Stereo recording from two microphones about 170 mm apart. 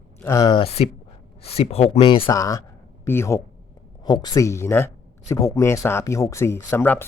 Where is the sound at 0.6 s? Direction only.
35° left (ahead or behind).